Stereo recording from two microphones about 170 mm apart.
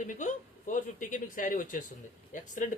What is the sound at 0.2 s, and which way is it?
Speech, 50° left (ahead or behind).